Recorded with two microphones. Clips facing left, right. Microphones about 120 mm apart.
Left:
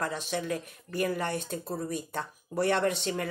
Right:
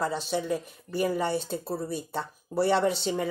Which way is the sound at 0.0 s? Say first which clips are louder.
Right 3 dB; 10° right (ahead or behind).